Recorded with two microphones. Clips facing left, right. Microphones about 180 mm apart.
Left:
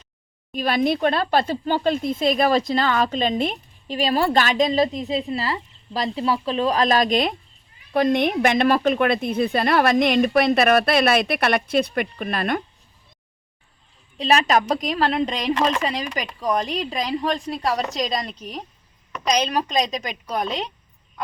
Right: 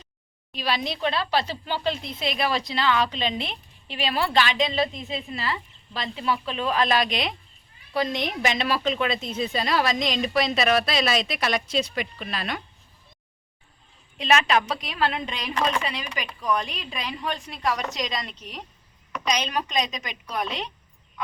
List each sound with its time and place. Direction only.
0.5 s speech: 50° left (ahead or behind)
7.9 s a woman's voice: 55° left (ahead or behind)
14.2 s a woman's voice: 35° left (ahead or behind)